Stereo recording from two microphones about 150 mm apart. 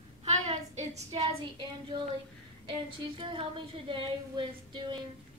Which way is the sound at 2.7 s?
35° right (ahead or behind).